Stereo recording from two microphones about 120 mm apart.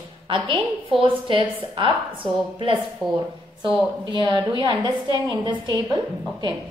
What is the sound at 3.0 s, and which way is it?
Speech, centre (ahead or behind).